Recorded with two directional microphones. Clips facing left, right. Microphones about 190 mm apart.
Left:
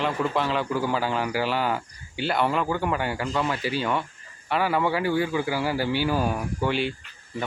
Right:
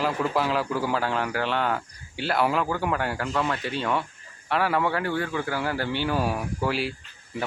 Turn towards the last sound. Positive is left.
turn(degrees=-5)  # may be behind; listen again after turning